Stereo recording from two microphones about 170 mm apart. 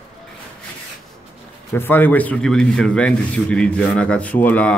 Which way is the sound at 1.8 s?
10° left (ahead or behind).